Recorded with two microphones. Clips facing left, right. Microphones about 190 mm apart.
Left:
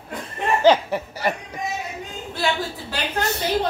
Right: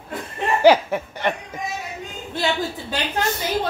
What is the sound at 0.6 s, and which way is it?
Speech, 10° right (ahead or behind).